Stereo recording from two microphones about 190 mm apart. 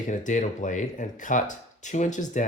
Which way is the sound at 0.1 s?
40° left (ahead or behind).